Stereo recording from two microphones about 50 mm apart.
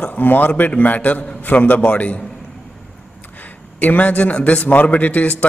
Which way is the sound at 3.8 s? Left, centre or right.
Left.